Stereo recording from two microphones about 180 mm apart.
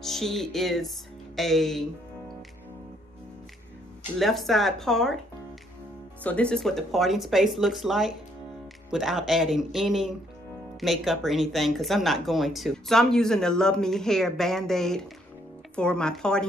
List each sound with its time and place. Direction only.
0.0 s speech: centre (ahead or behind)
4.2 s speech: centre (ahead or behind)
6.2 s speech: 5° left (ahead or behind)